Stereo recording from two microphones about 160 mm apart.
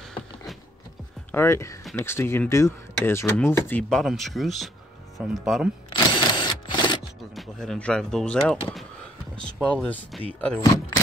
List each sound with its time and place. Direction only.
1.3 s speech: 15° left (ahead or behind)
4.0 s speech: centre (ahead or behind)
5.9 s camera: 30° left (ahead or behind)
7.3 s speech: centre (ahead or behind)